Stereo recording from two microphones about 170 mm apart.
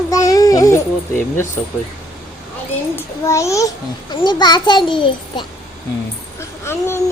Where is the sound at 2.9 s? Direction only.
15° left (ahead or behind).